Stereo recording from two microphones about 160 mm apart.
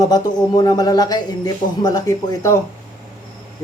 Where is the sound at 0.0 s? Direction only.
25° left (ahead or behind).